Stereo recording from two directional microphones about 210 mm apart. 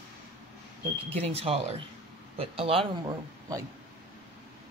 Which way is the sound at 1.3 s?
30° right (ahead or behind).